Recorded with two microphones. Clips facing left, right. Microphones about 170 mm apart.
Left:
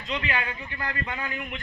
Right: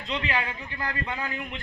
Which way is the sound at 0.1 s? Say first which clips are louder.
Even; 30° right (ahead or behind).